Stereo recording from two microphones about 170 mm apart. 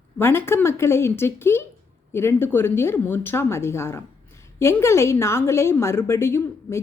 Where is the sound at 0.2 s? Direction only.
15° left (ahead or behind).